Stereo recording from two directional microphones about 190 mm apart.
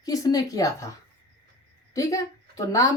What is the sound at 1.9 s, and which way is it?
A woman's voice, 15° left (ahead or behind).